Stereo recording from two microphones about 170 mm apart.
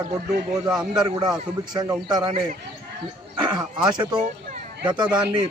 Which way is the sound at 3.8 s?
25° right (ahead or behind).